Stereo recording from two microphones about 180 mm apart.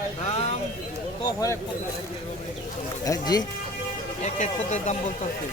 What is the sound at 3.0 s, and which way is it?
Speech, 20° left (ahead or behind).